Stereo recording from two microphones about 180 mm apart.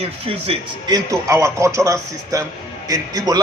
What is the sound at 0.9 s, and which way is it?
A man's voice, 20° right (ahead or behind).